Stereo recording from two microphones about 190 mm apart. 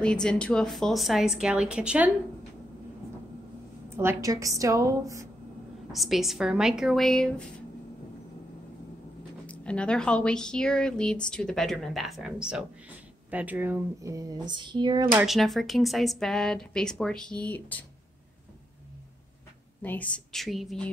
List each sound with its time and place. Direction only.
0.0 s a woman's voice: 5° left (ahead or behind)
3.9 s a woman's voice: 15° right (ahead or behind)
5.9 s a woman's voice: centre (ahead or behind)
9.5 s a woman's voice: 5° left (ahead or behind); by 15.0 s 25° right (ahead or behind)
15.0 s a woman's voice: 5° right (ahead or behind)
19.8 s a woman's voice: 10° left (ahead or behind)